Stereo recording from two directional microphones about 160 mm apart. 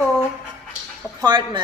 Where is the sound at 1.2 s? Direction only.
30° right (ahead or behind).